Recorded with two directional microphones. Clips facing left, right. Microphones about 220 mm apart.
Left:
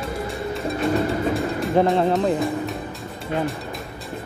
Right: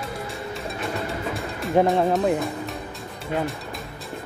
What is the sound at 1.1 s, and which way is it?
Music, centre (ahead or behind).